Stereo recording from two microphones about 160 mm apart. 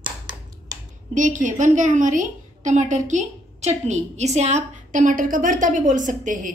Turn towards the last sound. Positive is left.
turn(degrees=-50)  # may be behind; listen again after turning